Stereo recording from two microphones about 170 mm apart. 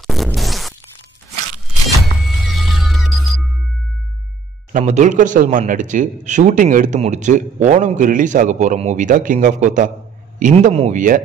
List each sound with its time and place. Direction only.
0.0 s zipper: centre (ahead or behind)
2.8 s music: centre (ahead or behind)
4.7 s a man's voice: 45° right (ahead or behind)